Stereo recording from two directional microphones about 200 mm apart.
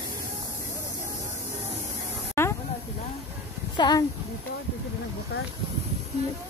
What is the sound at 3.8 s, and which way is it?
Speech, 20° left (ahead or behind).